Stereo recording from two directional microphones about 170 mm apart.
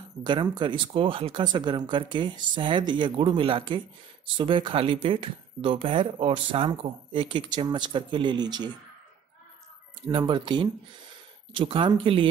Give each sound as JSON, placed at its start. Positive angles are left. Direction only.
{"t": 0.2, "sound": "speech", "side_deg": -25}
{"t": 10.0, "sound": "speech", "side_deg": -25}